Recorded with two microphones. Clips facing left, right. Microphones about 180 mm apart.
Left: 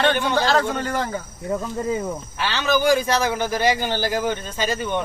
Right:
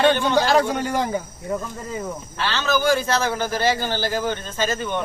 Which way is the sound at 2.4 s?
15° left (ahead or behind).